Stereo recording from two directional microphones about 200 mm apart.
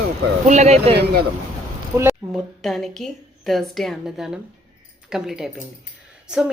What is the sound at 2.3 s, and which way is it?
Speech, centre (ahead or behind).